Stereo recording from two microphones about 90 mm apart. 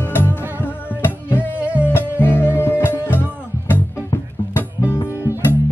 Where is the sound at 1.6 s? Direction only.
15° right (ahead or behind).